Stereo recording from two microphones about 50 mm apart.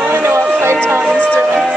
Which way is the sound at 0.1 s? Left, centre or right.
Right.